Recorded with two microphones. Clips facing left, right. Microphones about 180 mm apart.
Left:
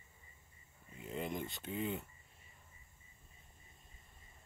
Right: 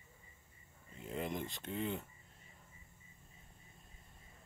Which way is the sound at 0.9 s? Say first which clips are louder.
Even; centre (ahead or behind).